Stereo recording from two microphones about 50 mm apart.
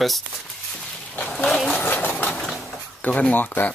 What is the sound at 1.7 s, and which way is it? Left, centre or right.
Vehicle, left.